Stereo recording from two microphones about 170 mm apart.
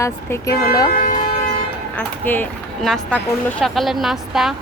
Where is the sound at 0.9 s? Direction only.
55° left (ahead or behind).